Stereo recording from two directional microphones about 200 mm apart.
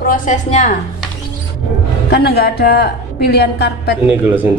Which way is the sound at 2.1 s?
50° left (ahead or behind).